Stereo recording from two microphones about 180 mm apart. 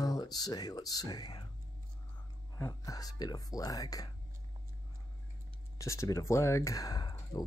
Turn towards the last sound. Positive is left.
turn(degrees=20)  # may be behind; listen again after turning